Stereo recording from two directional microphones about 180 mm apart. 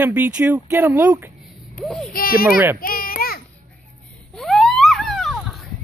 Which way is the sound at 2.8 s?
55° left (ahead or behind).